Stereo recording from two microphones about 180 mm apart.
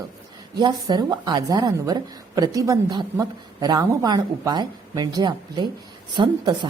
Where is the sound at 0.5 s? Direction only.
25° right (ahead or behind).